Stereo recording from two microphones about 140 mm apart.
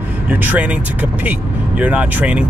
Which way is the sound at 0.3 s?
15° right (ahead or behind).